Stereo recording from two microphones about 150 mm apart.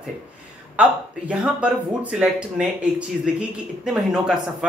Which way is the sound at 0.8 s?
10° right (ahead or behind).